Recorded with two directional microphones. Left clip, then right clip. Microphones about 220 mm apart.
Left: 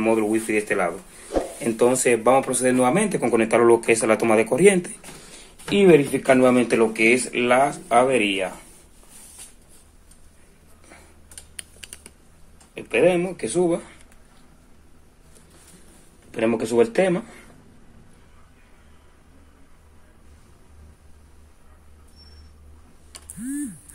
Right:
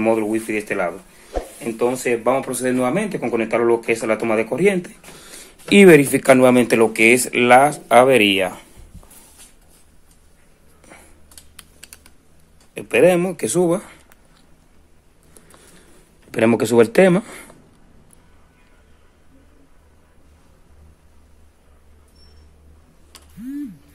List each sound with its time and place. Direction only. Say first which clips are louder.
0.0 s speech: right 2 dB; 10° right (ahead or behind)
1.6 s speech: left 1 dB; 15° left (ahead or behind)
2.2 s speech: left 1 dB; centre (ahead or behind)
5.3 s speech: right 8 dB; 35° right (ahead or behind)
10.9 s a sound: right 4 dB; 35° right (ahead or behind)
12.7 s speech: right 4 dB; 40° right (ahead or behind)
16.3 s speech: right 6 dB; 50° right (ahead or behind)